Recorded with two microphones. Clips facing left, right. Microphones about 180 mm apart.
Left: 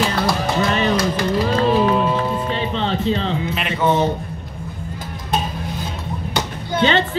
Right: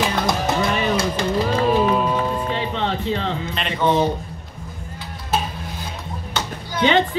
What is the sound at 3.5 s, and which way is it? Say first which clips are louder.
Speech: even; 5° left (ahead or behind).